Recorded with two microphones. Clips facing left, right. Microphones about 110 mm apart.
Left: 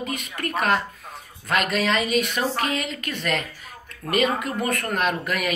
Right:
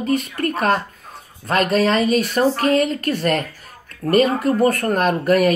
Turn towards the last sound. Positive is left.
turn(degrees=-40)  # may be behind; listen again after turning